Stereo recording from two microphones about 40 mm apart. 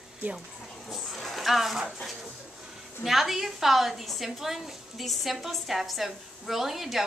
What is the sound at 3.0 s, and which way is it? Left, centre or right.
A woman's voice, centre.